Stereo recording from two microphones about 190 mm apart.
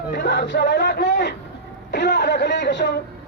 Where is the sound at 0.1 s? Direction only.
65° left (ahead or behind).